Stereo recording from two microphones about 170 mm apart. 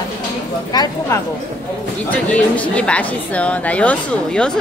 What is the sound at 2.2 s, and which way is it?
A woman's voice, 10° left (ahead or behind).